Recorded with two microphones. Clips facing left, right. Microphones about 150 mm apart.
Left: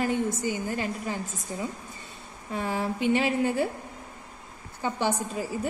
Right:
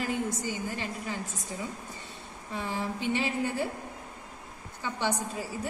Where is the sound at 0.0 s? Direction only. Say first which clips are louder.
Left 5 dB; 50° left (ahead or behind).